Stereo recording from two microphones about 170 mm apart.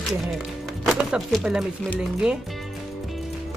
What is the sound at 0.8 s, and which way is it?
Speech, 5° right (ahead or behind).